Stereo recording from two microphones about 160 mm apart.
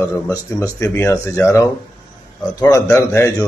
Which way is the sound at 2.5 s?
20° left (ahead or behind).